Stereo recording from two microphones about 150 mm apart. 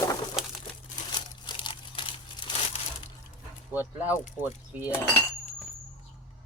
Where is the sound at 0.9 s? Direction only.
30° left (ahead or behind).